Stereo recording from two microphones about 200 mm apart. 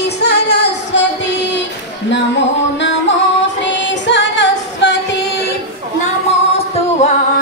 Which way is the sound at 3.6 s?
60° left (ahead or behind).